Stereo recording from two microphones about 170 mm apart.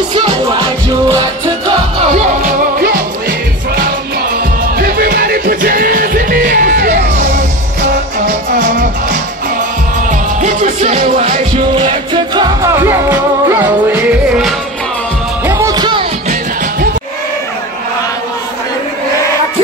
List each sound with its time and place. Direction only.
2.4 s music: 60° right (ahead or behind)
4.7 s music: 60° right (ahead or behind)
10.4 s music: 45° right (ahead or behind)
11.7 s music: 30° right (ahead or behind)
12.7 s music: 15° right (ahead or behind)
15.4 s music: 20° right (ahead or behind)